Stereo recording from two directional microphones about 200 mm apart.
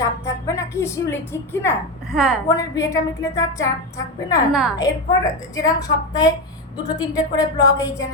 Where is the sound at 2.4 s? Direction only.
15° left (ahead or behind).